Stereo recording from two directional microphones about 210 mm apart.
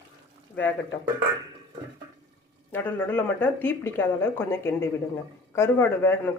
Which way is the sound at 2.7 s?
10° left (ahead or behind).